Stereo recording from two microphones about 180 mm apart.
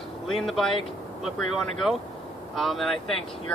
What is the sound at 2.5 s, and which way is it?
Speech, centre (ahead or behind).